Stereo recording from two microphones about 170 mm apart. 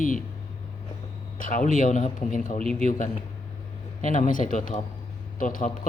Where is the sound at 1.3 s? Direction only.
50° left (ahead or behind).